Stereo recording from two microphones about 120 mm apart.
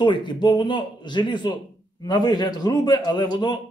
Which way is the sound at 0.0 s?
40° left (ahead or behind).